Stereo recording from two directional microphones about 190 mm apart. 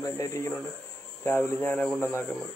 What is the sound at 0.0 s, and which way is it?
Speech, 15° left (ahead or behind).